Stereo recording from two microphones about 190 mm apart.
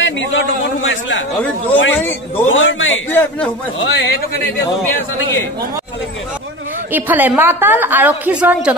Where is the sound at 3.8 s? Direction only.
65° left (ahead or behind).